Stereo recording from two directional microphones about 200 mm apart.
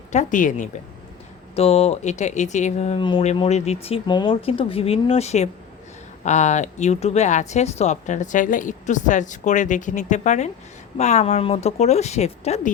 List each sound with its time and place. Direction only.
0.1 s speech: 40° left (ahead or behind)